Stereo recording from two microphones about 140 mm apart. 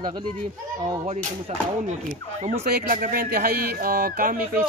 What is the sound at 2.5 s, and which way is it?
Speech, 80° right.